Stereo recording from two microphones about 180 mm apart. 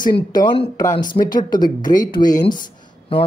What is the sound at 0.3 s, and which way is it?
Speech, 25° left (ahead or behind).